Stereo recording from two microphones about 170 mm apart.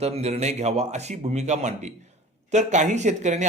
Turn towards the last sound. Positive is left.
turn(degrees=-45)  # may be behind; listen again after turning